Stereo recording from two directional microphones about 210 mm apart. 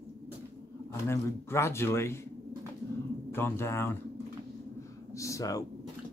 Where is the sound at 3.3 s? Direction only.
10° left (ahead or behind).